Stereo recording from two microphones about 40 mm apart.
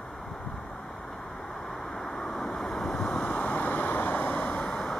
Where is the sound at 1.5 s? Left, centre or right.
Centre.